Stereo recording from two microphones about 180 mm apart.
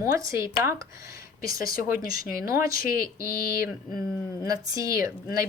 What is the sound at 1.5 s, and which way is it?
Speech, 55° left (ahead or behind).